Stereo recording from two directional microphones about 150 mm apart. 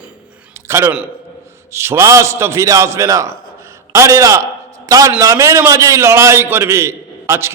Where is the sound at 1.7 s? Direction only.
20° right (ahead or behind).